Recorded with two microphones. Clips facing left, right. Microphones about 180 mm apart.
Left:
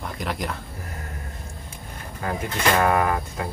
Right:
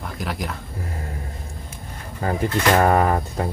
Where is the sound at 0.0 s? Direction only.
Centre (ahead or behind).